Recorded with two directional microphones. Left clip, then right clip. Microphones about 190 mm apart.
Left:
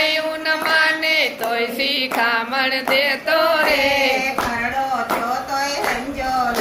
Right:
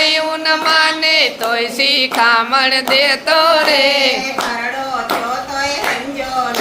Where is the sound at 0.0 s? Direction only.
20° right (ahead or behind).